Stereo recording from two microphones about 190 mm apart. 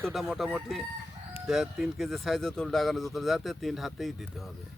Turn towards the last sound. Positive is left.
turn(degrees=0)  # may be behind; listen again after turning